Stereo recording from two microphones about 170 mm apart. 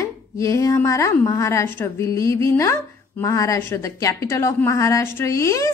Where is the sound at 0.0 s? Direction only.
20° left (ahead or behind).